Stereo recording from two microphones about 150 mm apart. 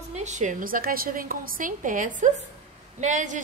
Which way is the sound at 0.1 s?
50° right (ahead or behind).